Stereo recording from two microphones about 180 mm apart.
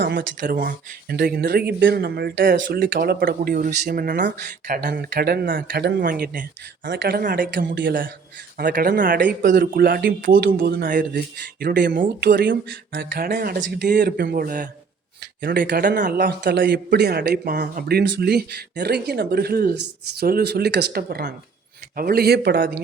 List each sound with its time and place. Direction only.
0.0 s speech: 55° right (ahead or behind)
6.8 s speech: 70° right (ahead or behind); by 12.3 s 50° right (ahead or behind)
12.3 s speech: 75° right (ahead or behind)
12.9 s speech: 60° right (ahead or behind)